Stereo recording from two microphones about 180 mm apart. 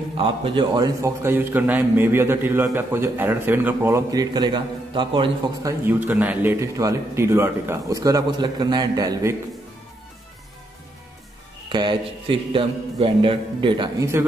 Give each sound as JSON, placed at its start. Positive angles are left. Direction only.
{"t": 0.2, "sound": "a man's voice", "side_deg": -30}
{"t": 1.0, "sound": "a man's voice", "side_deg": -10}
{"t": 11.7, "sound": "a man's voice", "side_deg": -25}